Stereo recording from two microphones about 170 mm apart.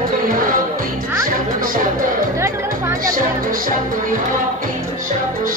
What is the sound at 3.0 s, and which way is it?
Speech, 55° right (ahead or behind).